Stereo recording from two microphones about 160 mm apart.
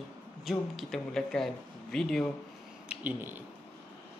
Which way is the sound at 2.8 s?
10° right (ahead or behind).